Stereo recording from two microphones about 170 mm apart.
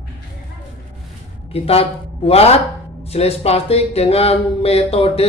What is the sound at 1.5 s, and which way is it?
Speech, 35° left (ahead or behind).